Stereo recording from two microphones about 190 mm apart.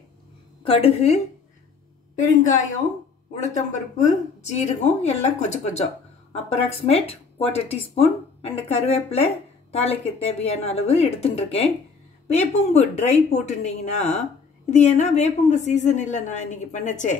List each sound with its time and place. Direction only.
0.7 s speech: 30° left (ahead or behind)